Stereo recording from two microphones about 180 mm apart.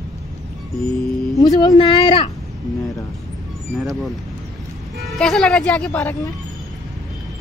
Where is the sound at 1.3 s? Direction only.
20° left (ahead or behind).